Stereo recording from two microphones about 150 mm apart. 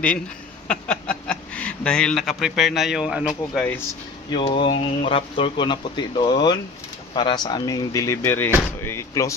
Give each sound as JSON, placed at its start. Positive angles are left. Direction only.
{"t": 0.7, "sound": "speech", "side_deg": 5}
{"t": 4.3, "sound": "speech", "side_deg": 35}